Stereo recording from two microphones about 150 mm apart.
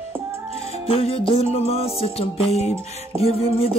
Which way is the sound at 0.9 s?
40° left (ahead or behind).